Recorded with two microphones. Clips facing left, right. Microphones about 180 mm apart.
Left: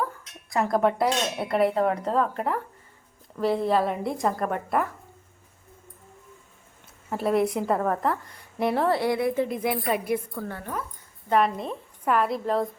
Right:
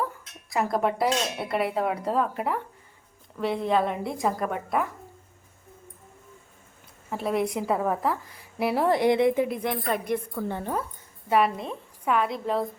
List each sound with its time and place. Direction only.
0.5 s a woman's voice: centre (ahead or behind)
7.1 s a woman's voice: centre (ahead or behind); by 9.5 s 20° right (ahead or behind)
9.5 s speech: 5° left (ahead or behind)
10.5 s speech: 30° right (ahead or behind)
11.3 s a woman's voice: 5° right (ahead or behind)